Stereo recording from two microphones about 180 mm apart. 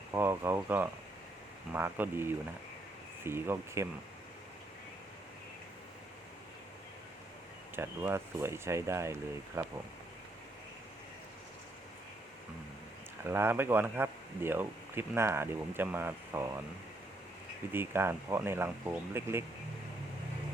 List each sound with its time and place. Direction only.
0.1 s speech: 10° right (ahead or behind)
7.8 s speech: 10° right (ahead or behind)
13.2 s speech: 15° right (ahead or behind)
17.7 s speech: 10° right (ahead or behind)